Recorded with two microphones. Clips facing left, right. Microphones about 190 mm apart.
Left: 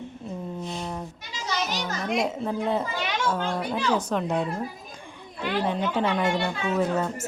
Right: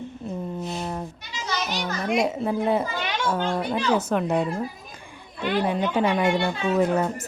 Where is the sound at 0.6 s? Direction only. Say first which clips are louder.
Right 3 dB; 5° right (ahead or behind).